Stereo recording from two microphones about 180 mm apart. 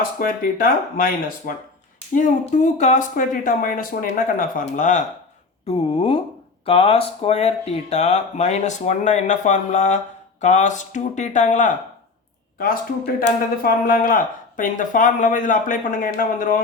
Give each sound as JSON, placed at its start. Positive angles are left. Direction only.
{"t": 0.2, "sound": "speech", "side_deg": 55}
{"t": 5.7, "sound": "speech", "side_deg": 30}